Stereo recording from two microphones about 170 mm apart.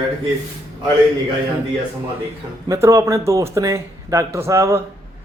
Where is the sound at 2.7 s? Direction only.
20° right (ahead or behind).